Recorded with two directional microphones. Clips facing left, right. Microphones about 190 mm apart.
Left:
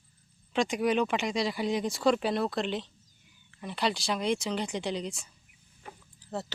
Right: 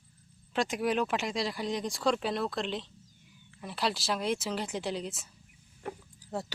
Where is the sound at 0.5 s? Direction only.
Centre (ahead or behind).